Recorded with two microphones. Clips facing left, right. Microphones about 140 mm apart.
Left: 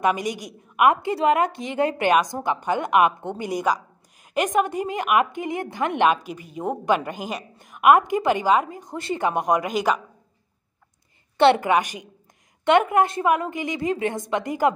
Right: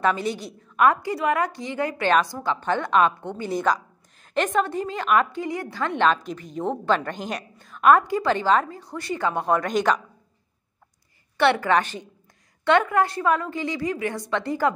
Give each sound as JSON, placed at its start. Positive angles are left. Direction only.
{"t": 0.0, "sound": "a woman's voice", "side_deg": 15}
{"t": 11.3, "sound": "a woman's voice", "side_deg": 25}
{"t": 11.7, "sound": "a woman's voice", "side_deg": 10}